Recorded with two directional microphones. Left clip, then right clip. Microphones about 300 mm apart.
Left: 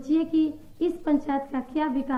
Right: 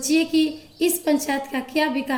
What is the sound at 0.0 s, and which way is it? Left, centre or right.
A woman's voice, right.